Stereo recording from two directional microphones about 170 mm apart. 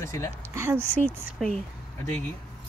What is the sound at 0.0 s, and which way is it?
Speech, 15° left (ahead or behind).